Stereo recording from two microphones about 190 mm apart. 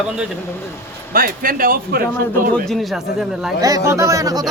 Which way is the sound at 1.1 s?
50° right (ahead or behind).